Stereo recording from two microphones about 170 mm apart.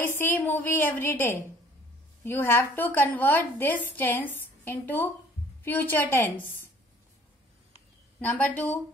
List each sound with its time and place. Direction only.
0.2 s a woman's voice: 10° left (ahead or behind)
8.2 s a woman's voice: 10° left (ahead or behind)